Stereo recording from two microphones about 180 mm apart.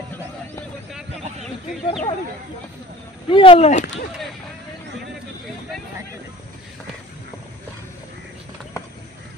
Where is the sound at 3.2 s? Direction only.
30° left (ahead or behind).